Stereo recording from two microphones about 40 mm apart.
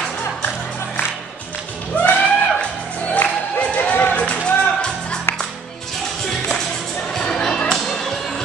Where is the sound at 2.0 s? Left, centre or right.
Left.